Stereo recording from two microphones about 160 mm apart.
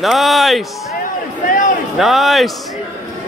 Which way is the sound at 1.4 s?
55° left (ahead or behind).